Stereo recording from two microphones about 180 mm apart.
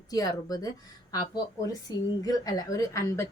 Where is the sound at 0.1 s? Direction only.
20° left (ahead or behind).